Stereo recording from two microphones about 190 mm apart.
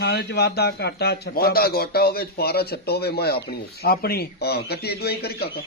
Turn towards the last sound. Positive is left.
turn(degrees=55)  # may be behind; listen again after turning